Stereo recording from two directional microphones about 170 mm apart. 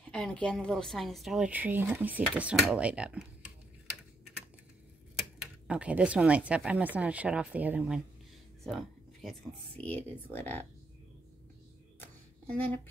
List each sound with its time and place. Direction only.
0.1 s speech: 5° left (ahead or behind)
5.7 s speech: 5° right (ahead or behind); by 10.7 s 10° left (ahead or behind)
12.0 s music: 10° left (ahead or behind)